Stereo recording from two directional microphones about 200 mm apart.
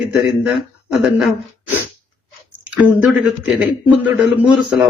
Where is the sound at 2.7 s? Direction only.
5° right (ahead or behind).